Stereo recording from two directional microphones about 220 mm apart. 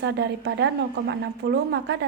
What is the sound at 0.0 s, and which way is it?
A woman's voice, 50° right (ahead or behind).